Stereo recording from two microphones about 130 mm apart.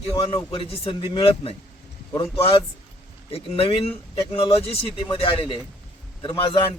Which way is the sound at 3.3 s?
45° left (ahead or behind).